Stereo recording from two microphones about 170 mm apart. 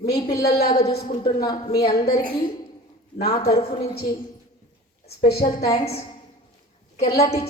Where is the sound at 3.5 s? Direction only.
35° left (ahead or behind).